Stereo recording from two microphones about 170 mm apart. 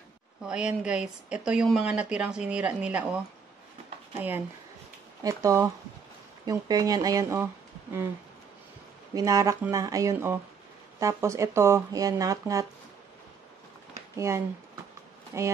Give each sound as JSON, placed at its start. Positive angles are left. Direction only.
{"t": 0.4, "sound": "speech", "side_deg": -5}
{"t": 5.2, "sound": "speech", "side_deg": -20}
{"t": 9.1, "sound": "speech", "side_deg": -20}
{"t": 14.1, "sound": "speech", "side_deg": -15}